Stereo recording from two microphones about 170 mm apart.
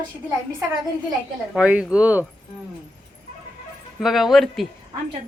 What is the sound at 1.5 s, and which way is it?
Speech, 5° right (ahead or behind).